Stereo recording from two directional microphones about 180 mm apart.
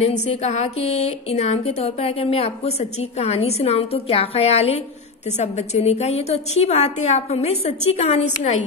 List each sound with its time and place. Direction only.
0.0 s a woman's voice: 40° left (ahead or behind)